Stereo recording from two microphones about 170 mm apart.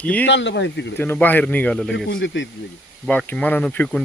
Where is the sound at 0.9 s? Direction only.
10° left (ahead or behind).